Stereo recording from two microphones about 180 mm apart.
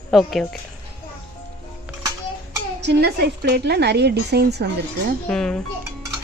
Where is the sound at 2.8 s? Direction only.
65° right (ahead or behind).